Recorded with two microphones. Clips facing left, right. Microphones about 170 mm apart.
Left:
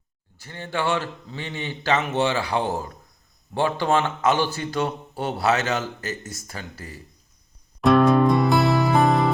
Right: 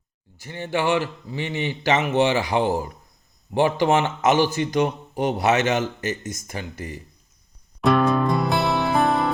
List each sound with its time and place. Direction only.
0.3 s a man's voice: 15° right (ahead or behind)
7.8 s music: centre (ahead or behind)